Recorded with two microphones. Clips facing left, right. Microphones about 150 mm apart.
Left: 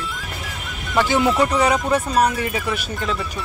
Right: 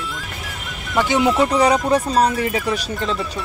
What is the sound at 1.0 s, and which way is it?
Speech, 20° right (ahead or behind).